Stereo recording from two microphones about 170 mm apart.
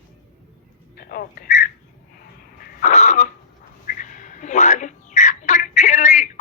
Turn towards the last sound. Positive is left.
turn(degrees=45)  # may be behind; listen again after turning